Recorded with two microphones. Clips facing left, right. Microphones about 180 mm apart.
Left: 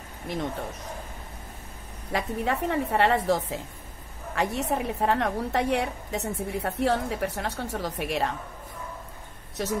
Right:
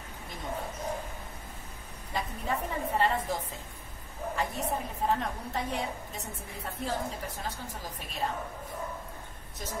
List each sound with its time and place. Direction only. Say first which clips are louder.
2.1 s a woman's voice: left 6 dB; 75° left (ahead or behind)
9.6 s speech: left 12 dB; 80° left